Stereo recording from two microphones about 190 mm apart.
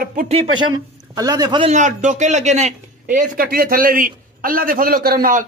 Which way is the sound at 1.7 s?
40° right (ahead or behind).